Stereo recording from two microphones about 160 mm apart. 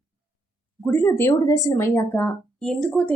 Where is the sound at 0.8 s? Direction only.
15° left (ahead or behind).